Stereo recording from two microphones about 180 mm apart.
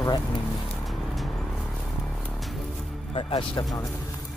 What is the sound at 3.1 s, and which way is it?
Speech, 30° left (ahead or behind).